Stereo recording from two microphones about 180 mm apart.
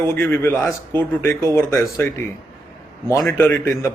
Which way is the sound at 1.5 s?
15° left (ahead or behind).